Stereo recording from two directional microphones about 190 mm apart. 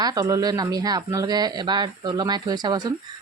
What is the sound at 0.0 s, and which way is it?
Speech, 20° right (ahead or behind).